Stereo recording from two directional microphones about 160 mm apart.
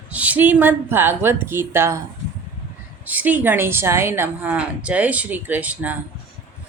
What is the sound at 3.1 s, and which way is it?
A woman's voice, 10° right (ahead or behind).